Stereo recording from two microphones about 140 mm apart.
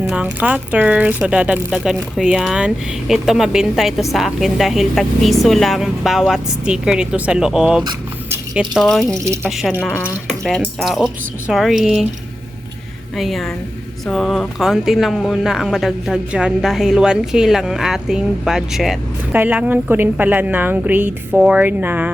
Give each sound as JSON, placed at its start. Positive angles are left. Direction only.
{"t": 0.0, "sound": "a sound", "side_deg": -5}
{"t": 0.3, "sound": "a woman's voice", "side_deg": -10}
{"t": 9.1, "sound": "speech", "side_deg": -20}
{"t": 9.4, "sound": "speech", "side_deg": 0}
{"t": 9.8, "sound": "a woman's voice", "side_deg": 10}
{"t": 13.1, "sound": "a woman's voice", "side_deg": 0}